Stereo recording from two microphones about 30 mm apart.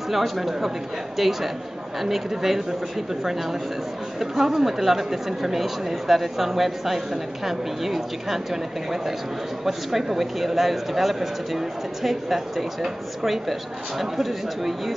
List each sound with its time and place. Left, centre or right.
0.1 s speech: centre